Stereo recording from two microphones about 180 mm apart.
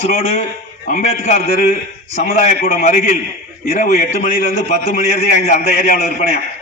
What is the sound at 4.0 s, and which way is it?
A man's voice, 40° left (ahead or behind).